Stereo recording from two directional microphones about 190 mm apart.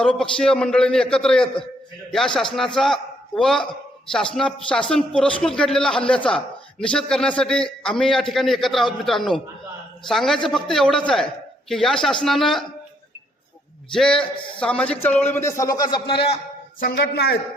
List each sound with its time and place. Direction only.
0.0 s a man's voice: 5° left (ahead or behind)
13.9 s a man's voice: 5° left (ahead or behind); by 16.4 s 30° left (ahead or behind)
16.8 s speech: 55° left (ahead or behind)